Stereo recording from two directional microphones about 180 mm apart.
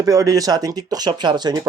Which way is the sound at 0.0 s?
20° right (ahead or behind).